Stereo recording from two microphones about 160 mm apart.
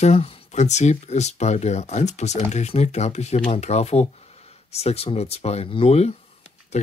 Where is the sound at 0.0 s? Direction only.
40° left (ahead or behind).